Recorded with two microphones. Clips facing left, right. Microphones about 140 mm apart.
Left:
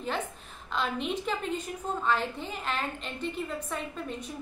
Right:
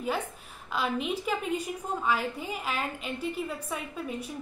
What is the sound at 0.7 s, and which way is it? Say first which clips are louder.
A woman's voice: right 1 dB; 5° right (ahead or behind).